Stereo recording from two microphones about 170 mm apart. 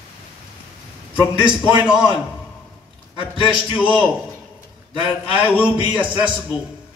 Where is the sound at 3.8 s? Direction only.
5° right (ahead or behind).